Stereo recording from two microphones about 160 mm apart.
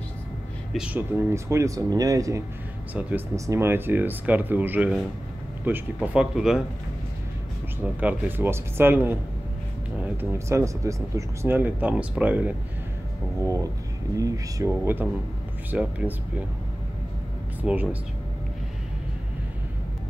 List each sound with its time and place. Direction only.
0.7 s speech: 10° right (ahead or behind)
2.9 s speech: 10° right (ahead or behind)
7.8 s speech: 10° right (ahead or behind)
17.6 s speech: 10° right (ahead or behind)